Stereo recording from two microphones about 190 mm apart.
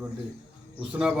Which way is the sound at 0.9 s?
5° right (ahead or behind).